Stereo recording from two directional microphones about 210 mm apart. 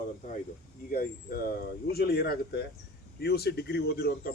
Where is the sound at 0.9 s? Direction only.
45° left (ahead or behind).